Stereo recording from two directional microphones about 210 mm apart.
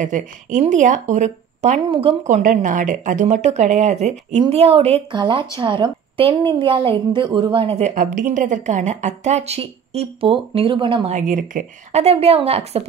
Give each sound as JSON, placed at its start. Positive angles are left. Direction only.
{"t": 0.0, "sound": "a woman's voice", "side_deg": -35}